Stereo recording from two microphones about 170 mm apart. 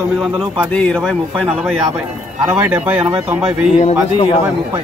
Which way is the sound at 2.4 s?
10° right (ahead or behind).